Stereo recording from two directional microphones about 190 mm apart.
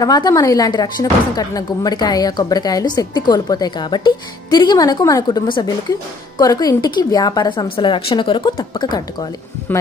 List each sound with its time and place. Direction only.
0.0 s speech: 20° left (ahead or behind)